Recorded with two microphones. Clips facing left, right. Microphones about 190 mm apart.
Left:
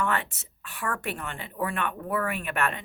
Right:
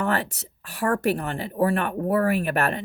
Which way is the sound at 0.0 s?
40° right (ahead or behind).